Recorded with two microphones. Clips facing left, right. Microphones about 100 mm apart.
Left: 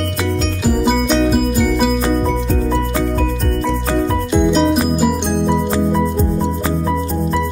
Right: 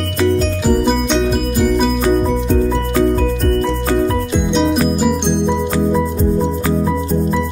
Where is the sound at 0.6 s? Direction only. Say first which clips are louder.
Left 1 dB; centre (ahead or behind).